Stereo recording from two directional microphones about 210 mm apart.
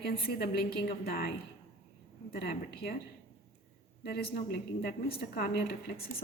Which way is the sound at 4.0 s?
50° left (ahead or behind).